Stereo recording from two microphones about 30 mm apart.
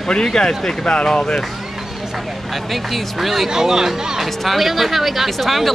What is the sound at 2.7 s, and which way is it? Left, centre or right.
Speech, centre.